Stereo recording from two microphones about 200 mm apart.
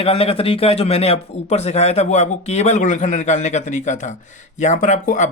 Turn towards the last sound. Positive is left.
turn(degrees=40)  # may be behind; listen again after turning